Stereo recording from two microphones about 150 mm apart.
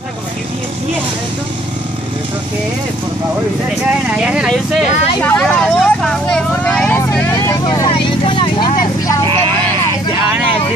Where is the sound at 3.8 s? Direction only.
5° right (ahead or behind).